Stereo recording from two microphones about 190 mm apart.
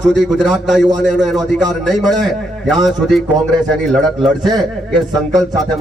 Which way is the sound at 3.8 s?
5° left (ahead or behind).